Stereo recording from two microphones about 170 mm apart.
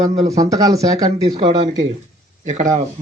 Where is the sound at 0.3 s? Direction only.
20° right (ahead or behind).